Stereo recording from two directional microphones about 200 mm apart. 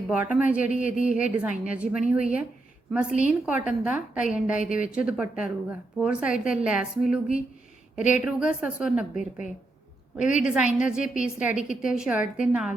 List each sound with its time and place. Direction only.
0.1 s a woman's voice: 5° right (ahead or behind)
4.5 s speech: 40° left (ahead or behind)
4.9 s a woman's voice: 5° right (ahead or behind)
7.9 s speech: 40° left (ahead or behind)
8.2 s a woman's voice: 5° right (ahead or behind)
10.2 s speech: 40° left (ahead or behind)
10.4 s a woman's voice: 5° right (ahead or behind)
11.0 s speech: 40° left (ahead or behind)
11.3 s a woman's voice: 5° right (ahead or behind)